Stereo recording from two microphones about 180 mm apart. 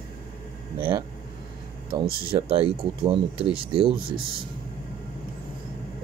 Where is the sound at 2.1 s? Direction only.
55° right (ahead or behind).